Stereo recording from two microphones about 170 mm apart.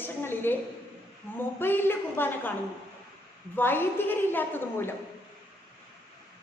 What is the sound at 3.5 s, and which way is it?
A woman's voice, 10° left (ahead or behind).